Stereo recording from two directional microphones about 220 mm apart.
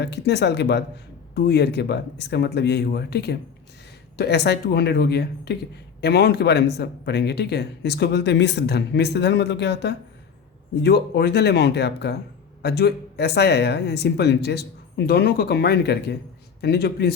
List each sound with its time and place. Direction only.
0.0 s speech: 50° left (ahead or behind)